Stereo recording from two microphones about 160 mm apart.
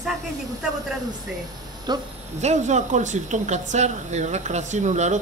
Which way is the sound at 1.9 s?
25° right (ahead or behind).